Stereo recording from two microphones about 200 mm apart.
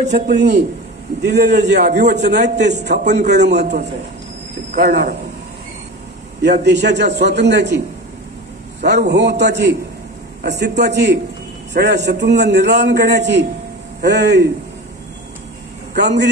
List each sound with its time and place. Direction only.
0.1 s a man's voice: 55° right (ahead or behind)
6.4 s a man's voice: 55° right (ahead or behind)
8.8 s a man's voice: 55° right (ahead or behind)
15.9 s a man's voice: 55° right (ahead or behind)